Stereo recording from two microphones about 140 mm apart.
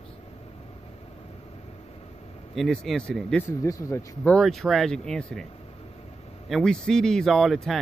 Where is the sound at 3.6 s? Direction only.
20° left (ahead or behind).